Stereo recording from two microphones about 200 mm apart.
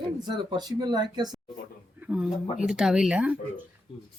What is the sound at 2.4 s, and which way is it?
Speech, 35° left (ahead or behind).